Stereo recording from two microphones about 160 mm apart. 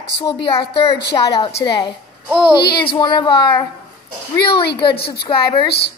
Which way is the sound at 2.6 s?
90° left.